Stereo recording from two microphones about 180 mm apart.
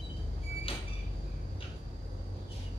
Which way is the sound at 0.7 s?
30° left (ahead or behind).